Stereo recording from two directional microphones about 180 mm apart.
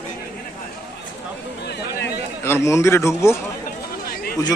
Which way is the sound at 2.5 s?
15° left (ahead or behind).